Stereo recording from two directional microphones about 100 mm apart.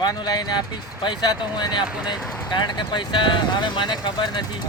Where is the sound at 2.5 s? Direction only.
50° left (ahead or behind).